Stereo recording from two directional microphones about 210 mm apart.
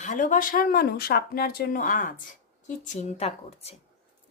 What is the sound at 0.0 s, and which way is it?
A woman's voice, 40° left (ahead or behind).